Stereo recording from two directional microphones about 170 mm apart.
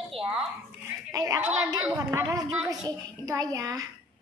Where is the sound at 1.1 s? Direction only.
20° right (ahead or behind).